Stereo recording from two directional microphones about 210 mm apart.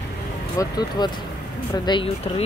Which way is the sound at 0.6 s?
20° left (ahead or behind).